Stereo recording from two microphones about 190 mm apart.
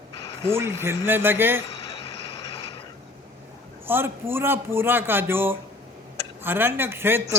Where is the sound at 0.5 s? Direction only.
15° right (ahead or behind).